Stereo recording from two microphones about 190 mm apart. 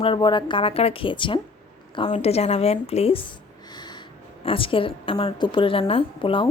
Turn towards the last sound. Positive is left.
turn(degrees=30)  # may be behind; listen again after turning